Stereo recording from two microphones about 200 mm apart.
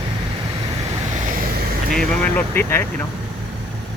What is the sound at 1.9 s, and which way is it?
Speech, 5° left (ahead or behind).